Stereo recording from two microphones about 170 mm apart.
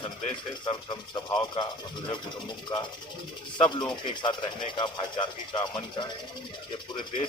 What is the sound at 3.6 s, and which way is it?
Speech, 30° left (ahead or behind).